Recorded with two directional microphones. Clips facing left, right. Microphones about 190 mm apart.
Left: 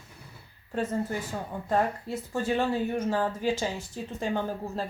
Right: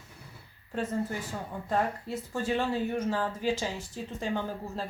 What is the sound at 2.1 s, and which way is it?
Speech, 45° left (ahead or behind).